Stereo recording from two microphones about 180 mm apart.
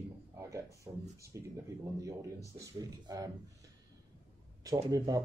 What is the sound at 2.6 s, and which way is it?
Speech, 20° right (ahead or behind).